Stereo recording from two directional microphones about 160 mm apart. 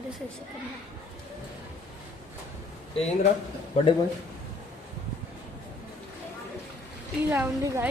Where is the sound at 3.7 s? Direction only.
45° left (ahead or behind).